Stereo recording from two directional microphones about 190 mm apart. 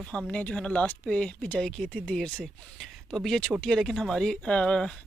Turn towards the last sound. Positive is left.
turn(degrees=5)  # may be behind; listen again after turning